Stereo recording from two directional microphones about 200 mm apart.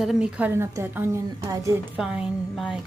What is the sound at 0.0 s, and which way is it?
A woman's voice, 5° right (ahead or behind).